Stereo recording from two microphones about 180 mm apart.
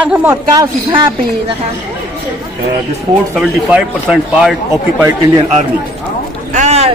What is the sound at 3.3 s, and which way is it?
Speech, 5° right (ahead or behind).